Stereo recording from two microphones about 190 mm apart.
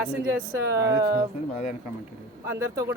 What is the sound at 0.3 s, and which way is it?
Speech, 15° right (ahead or behind).